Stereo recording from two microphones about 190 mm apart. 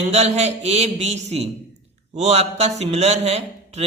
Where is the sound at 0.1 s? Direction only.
35° right (ahead or behind).